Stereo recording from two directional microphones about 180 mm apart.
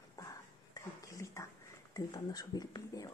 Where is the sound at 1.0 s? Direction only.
15° left (ahead or behind).